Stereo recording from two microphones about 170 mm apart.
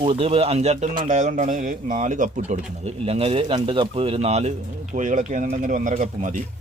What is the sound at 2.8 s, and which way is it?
Speech, 35° right (ahead or behind).